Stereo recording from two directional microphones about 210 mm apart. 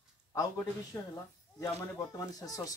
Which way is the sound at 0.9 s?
10° left (ahead or behind).